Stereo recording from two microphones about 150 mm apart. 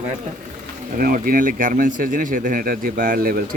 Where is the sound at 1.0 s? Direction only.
70° right (ahead or behind).